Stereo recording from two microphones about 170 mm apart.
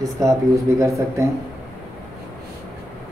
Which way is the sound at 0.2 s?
20° right (ahead or behind).